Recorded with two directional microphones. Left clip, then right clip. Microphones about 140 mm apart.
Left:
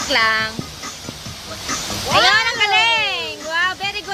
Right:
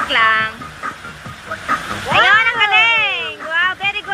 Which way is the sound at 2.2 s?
55° left (ahead or behind).